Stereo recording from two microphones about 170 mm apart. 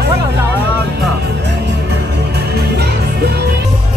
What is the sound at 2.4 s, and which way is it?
Music, 75° right (ahead or behind).